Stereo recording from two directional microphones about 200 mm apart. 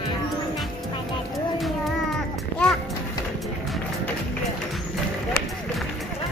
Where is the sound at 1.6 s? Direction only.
Centre (ahead or behind).